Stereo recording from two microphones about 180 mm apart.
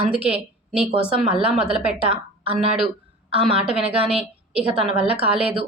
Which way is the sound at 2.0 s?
30° right (ahead or behind).